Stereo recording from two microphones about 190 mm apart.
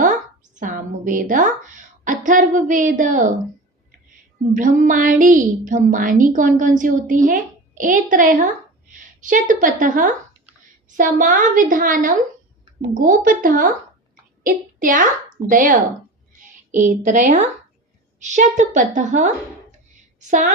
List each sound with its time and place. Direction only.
0.6 s a woman's voice: 45° right (ahead or behind)
4.5 s a woman's voice: 45° right (ahead or behind)
16.8 s a woman's voice: 40° right (ahead or behind)